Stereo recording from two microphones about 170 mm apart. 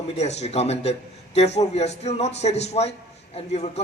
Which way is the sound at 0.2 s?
40° left (ahead or behind).